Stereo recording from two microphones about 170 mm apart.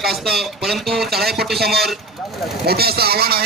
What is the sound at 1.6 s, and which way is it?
Speech, 70° right (ahead or behind).